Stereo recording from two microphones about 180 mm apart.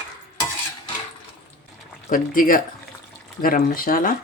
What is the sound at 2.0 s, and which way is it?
Speech, 50° left (ahead or behind).